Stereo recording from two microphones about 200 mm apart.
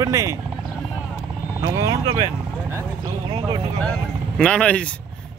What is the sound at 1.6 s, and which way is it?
Speech, 15° right (ahead or behind).